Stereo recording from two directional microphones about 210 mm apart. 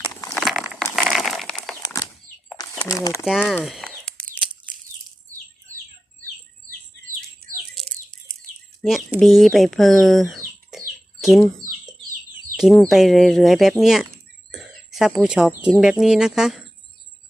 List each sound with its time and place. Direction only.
0.0 s crumpling: 15° left (ahead or behind)
0.3 s a sound: centre (ahead or behind)
1.8 s bird flight: 15° left (ahead or behind)
2.7 s speech: 10° left (ahead or behind)
3.2 s a sound: centre (ahead or behind)
7.8 s bird: centre (ahead or behind)
8.8 s speech: centre (ahead or behind)
12.5 s speech: centre (ahead or behind)